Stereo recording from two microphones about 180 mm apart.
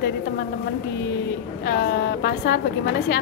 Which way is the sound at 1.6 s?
60° left (ahead or behind).